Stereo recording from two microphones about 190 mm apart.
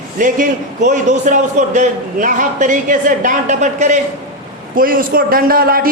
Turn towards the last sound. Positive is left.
turn(degrees=-50)  # may be behind; listen again after turning